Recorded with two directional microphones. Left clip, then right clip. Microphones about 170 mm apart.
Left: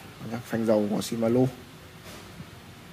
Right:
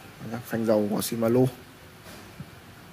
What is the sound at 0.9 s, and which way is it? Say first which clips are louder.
Speech: right 1 dB; 20° right (ahead or behind).